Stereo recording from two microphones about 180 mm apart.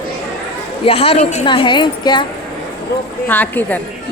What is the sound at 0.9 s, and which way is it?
A woman's voice, 35° left (ahead or behind).